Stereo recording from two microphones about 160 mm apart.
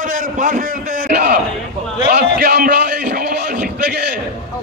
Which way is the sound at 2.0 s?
85° right.